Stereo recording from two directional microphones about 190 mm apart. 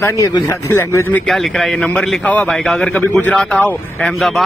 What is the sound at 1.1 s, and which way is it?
A man's voice, centre (ahead or behind).